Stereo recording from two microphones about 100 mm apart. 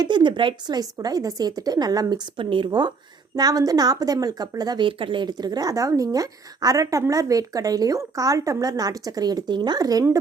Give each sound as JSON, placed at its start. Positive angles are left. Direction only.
{"t": 0.0, "sound": "speech", "side_deg": -50}
{"t": 0.8, "sound": "a woman's voice", "side_deg": -40}
{"t": 4.9, "sound": "a woman's voice", "side_deg": -60}